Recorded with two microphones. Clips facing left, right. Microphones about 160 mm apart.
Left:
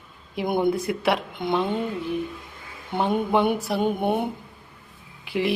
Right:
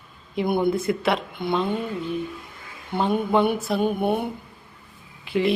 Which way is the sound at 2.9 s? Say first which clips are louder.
Right 1 dB; 15° left (ahead or behind).